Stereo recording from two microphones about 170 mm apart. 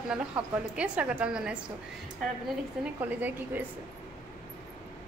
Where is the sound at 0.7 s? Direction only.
5° right (ahead or behind).